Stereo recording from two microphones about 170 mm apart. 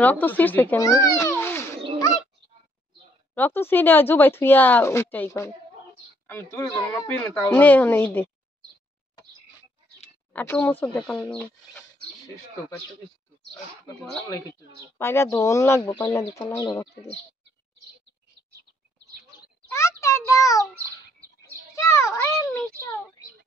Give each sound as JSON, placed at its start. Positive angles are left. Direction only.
{"t": 0.0, "sound": "a child's voice", "side_deg": 10}
{"t": 3.3, "sound": "speech", "side_deg": 10}
{"t": 10.3, "sound": "speech", "side_deg": 10}
{"t": 15.0, "sound": "speech", "side_deg": 15}
{"t": 19.7, "sound": "a child's voice", "side_deg": 15}
{"t": 21.7, "sound": "speech", "side_deg": 15}